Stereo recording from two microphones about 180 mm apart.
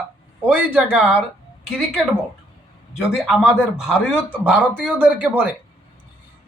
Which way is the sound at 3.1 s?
5° right (ahead or behind).